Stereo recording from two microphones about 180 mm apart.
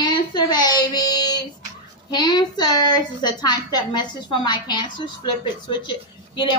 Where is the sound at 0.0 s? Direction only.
25° left (ahead or behind).